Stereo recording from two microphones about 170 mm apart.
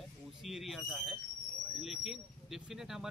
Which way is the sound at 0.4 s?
Centre (ahead or behind).